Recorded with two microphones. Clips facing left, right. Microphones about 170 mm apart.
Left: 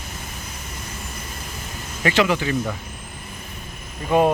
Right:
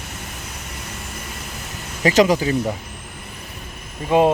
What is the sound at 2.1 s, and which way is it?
Speech, 40° right (ahead or behind).